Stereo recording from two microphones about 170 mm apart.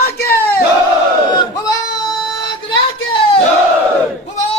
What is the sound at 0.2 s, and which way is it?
Battle cry, 15° left (ahead or behind).